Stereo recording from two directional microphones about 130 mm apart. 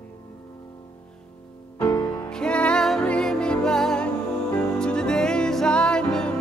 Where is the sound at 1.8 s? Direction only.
30° left (ahead or behind).